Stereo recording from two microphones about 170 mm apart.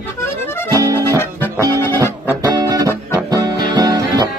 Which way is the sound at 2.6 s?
20° right (ahead or behind).